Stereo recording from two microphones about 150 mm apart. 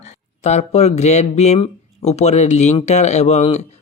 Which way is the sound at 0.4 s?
50° left (ahead or behind).